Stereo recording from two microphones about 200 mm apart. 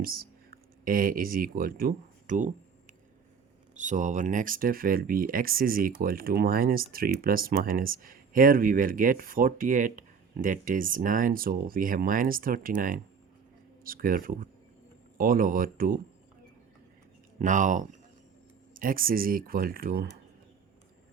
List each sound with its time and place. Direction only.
0.0 s speech: 50° right (ahead or behind)
17.4 s speech: 40° right (ahead or behind)